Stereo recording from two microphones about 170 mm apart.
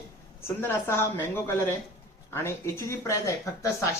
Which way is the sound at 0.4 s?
15° left (ahead or behind).